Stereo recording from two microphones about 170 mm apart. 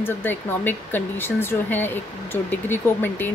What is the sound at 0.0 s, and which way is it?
Speech, 10° left (ahead or behind).